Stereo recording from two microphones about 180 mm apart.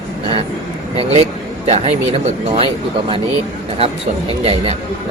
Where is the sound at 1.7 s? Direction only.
35° right (ahead or behind).